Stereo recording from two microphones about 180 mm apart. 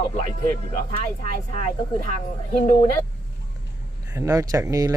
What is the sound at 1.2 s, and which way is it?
Speech, 50° right (ahead or behind).